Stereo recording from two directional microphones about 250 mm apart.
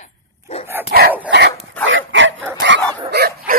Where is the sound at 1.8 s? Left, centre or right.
Right.